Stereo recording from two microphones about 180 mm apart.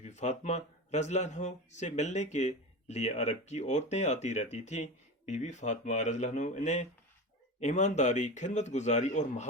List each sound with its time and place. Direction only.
0.0 s speech: 40° left (ahead or behind)